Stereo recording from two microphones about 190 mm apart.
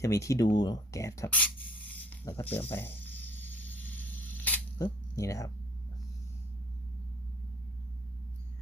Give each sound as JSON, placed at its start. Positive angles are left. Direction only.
{"t": 0.0, "sound": "speech", "side_deg": 15}
{"t": 2.0, "sound": "snake", "side_deg": 10}